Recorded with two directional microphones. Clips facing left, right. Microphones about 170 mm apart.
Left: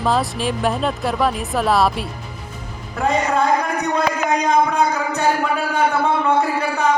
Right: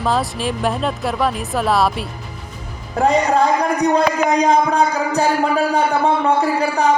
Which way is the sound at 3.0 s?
35° right (ahead or behind).